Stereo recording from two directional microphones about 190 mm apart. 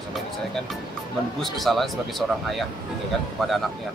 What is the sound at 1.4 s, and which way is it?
Speech, centre (ahead or behind).